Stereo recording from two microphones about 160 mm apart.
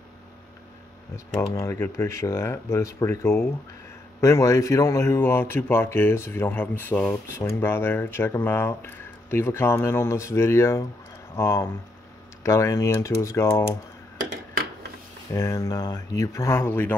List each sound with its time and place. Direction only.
1.1 s speech: 20° left (ahead or behind)
15.3 s speech: 20° left (ahead or behind)